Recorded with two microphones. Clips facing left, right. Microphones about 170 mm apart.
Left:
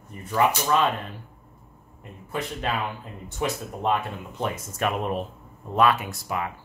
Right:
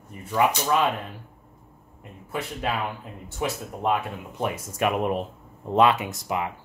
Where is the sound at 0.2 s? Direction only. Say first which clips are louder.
Even; 10° right (ahead or behind).